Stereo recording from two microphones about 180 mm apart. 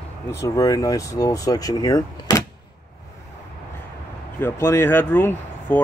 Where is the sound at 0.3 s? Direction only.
20° left (ahead or behind).